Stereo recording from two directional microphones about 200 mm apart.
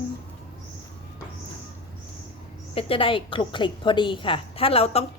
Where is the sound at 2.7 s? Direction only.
25° left (ahead or behind).